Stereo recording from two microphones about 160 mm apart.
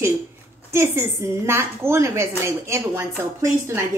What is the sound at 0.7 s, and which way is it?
A woman's voice, 15° right (ahead or behind).